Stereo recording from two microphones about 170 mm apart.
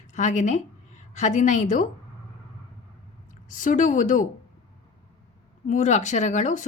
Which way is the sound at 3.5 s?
50° left (ahead or behind).